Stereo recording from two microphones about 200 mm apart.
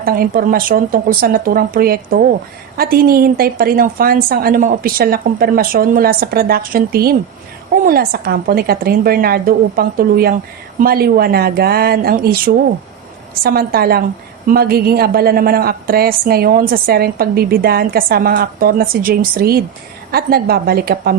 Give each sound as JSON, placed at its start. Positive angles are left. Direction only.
{"t": 0.0, "sound": "a woman's voice", "side_deg": -45}
{"t": 13.4, "sound": "a woman's voice", "side_deg": -50}